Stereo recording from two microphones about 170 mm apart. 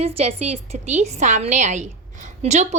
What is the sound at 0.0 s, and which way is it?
A woman's voice, 35° right (ahead or behind).